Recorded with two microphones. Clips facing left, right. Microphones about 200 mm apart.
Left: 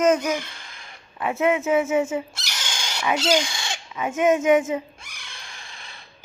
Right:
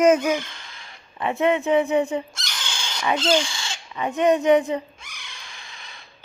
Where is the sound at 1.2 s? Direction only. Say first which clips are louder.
Right 1 dB; centre (ahead or behind).